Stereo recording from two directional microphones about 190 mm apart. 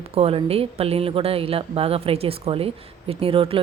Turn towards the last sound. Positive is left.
turn(degrees=-30)  # may be behind; listen again after turning